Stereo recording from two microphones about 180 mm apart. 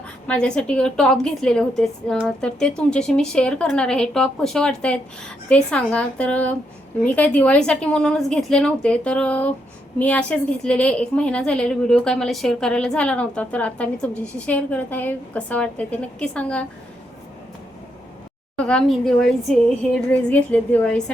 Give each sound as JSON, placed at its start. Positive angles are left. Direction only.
{"t": 0.3, "sound": "a woman's voice", "side_deg": 5}
{"t": 18.6, "sound": "a woman's voice", "side_deg": 5}